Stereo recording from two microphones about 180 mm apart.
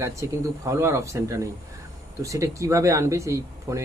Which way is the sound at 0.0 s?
15° right (ahead or behind).